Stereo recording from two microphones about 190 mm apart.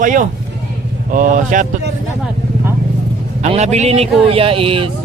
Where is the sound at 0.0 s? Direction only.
45° right (ahead or behind).